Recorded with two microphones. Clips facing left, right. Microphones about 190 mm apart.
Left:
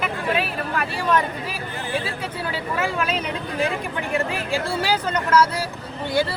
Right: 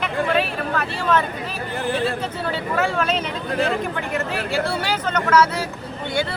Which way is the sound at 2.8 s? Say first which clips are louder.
Right 3 dB; 10° left (ahead or behind).